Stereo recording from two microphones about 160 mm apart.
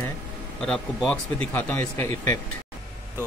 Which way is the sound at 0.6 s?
5° left (ahead or behind).